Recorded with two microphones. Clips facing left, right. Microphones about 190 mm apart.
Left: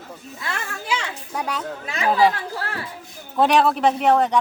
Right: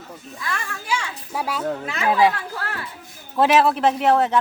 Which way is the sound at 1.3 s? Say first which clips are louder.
Right 1 dB; 5° right (ahead or behind).